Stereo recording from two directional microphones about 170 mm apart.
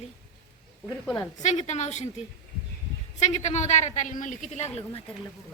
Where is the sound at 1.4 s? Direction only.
45° left (ahead or behind).